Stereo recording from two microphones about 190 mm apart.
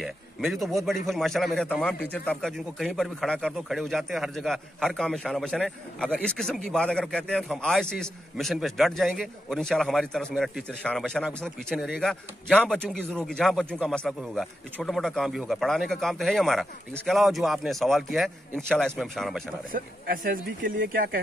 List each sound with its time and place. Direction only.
0.0 s a man's voice: centre (ahead or behind)
19.7 s speech: 50° right (ahead or behind)